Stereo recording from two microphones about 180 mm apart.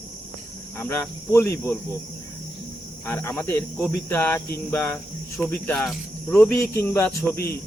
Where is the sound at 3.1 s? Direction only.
15° left (ahead or behind).